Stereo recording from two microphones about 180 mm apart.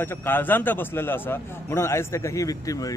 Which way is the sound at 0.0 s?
10° left (ahead or behind).